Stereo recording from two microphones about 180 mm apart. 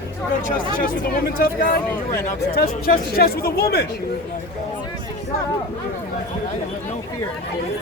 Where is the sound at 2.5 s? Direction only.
60° left (ahead or behind).